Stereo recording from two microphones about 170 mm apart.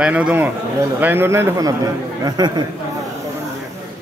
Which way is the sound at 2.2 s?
25° right (ahead or behind).